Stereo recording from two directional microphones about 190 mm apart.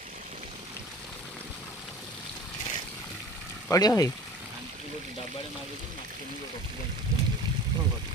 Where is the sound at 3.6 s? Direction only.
15° left (ahead or behind).